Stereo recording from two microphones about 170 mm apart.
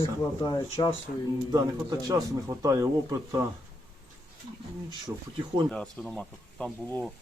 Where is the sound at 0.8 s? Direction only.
30° left (ahead or behind).